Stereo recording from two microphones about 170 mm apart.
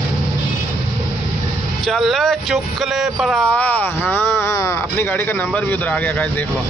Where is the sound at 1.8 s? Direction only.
Centre (ahead or behind).